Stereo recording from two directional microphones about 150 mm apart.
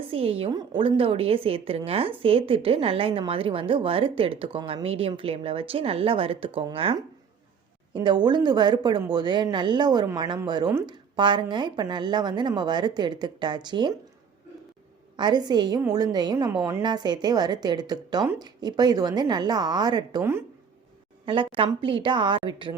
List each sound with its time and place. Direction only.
0.1 s a woman's voice: 40° right (ahead or behind)
15.1 s a woman's voice: 30° right (ahead or behind)
21.2 s speech: 35° right (ahead or behind)